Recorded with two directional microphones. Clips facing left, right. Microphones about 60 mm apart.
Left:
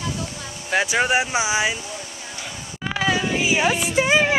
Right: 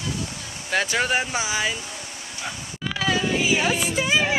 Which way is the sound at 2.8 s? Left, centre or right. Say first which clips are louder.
Left 2 dB; centre.